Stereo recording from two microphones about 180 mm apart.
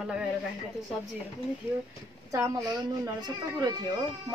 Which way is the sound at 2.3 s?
20° right (ahead or behind).